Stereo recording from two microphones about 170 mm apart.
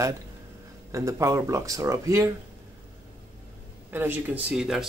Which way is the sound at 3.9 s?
10° right (ahead or behind).